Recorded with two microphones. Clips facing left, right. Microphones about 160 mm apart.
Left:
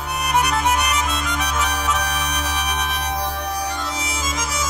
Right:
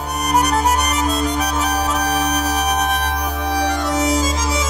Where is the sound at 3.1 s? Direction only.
85° right; by 4.1 s 65° right (ahead or behind).